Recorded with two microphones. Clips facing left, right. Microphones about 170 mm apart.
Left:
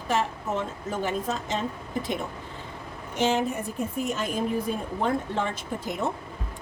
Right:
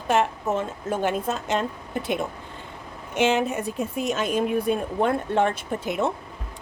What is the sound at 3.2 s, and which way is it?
Speech, 70° right (ahead or behind).